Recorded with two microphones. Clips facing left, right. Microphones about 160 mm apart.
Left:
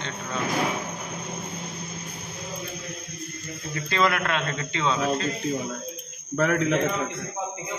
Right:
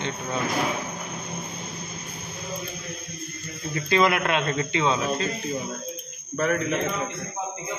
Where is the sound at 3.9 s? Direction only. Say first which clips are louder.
Right 3 dB; 15° right (ahead or behind).